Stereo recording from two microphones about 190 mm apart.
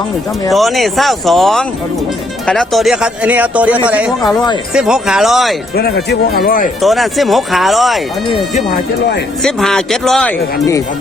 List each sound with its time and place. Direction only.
0.5 s speech: centre (ahead or behind)
5.7 s speech: 55° left (ahead or behind)
6.8 s speech: centre (ahead or behind)
9.4 s speech: centre (ahead or behind)